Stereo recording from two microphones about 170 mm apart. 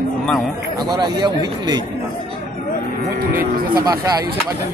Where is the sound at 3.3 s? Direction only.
55° right (ahead or behind).